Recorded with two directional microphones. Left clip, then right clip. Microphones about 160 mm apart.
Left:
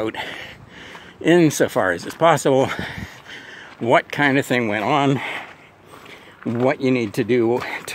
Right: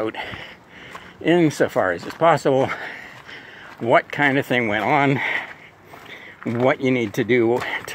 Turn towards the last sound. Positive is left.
turn(degrees=25)  # may be behind; listen again after turning